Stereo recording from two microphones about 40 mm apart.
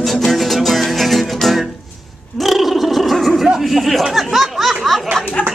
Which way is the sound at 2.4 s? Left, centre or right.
Centre.